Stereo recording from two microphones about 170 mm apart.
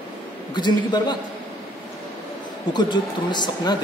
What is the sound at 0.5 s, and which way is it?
Speech, 25° left (ahead or behind).